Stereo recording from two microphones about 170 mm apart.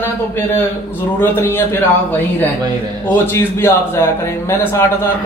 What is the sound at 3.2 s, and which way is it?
Speech, 15° left (ahead or behind).